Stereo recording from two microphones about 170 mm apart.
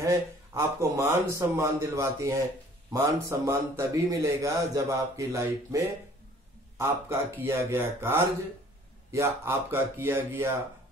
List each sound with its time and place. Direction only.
0.0 s a man's voice: 15° right (ahead or behind)
6.8 s a man's voice: 15° right (ahead or behind)